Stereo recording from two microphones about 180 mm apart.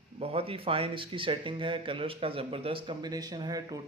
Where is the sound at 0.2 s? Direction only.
35° right (ahead or behind).